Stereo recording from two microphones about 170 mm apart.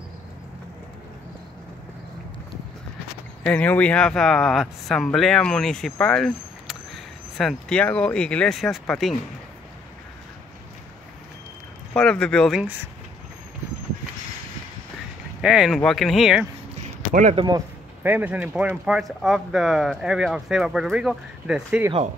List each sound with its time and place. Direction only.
3.4 s speech: 10° left (ahead or behind)
11.9 s speech: 5° left (ahead or behind)
15.4 s speech: centre (ahead or behind)
17.1 s speech: 45° right (ahead or behind)
18.0 s speech: 10° right (ahead or behind)